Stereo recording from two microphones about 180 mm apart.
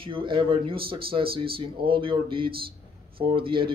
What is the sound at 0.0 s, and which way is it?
Speech, 30° right (ahead or behind).